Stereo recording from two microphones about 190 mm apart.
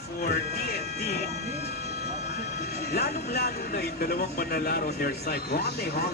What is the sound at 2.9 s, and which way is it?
Speech, 55° left (ahead or behind).